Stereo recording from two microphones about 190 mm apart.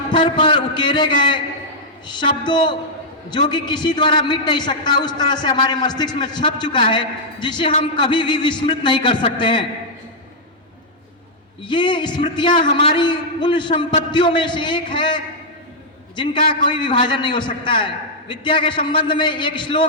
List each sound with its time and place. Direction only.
0.1 s a man's voice: 25° left (ahead or behind)
11.6 s a man's voice: 25° left (ahead or behind)